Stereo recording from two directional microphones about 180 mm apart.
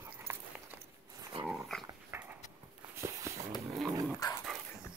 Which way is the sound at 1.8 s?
10° right (ahead or behind).